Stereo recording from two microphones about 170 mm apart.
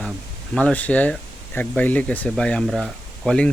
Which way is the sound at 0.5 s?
10° left (ahead or behind).